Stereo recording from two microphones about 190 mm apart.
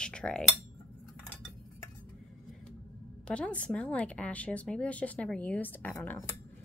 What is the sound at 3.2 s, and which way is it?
Speech, 5° left (ahead or behind).